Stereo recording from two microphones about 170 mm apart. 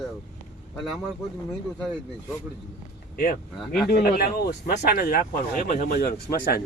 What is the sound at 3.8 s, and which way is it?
Speech, 65° left (ahead or behind).